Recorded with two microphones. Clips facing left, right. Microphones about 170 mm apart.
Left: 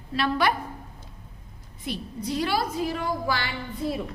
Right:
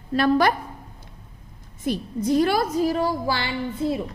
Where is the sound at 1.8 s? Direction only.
45° right (ahead or behind).